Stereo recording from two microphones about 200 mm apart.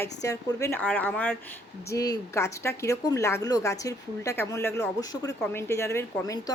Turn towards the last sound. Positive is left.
turn(degrees=15)  # may be behind; listen again after turning